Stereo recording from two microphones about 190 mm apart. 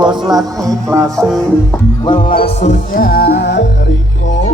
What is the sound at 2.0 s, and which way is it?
Music, 25° left (ahead or behind).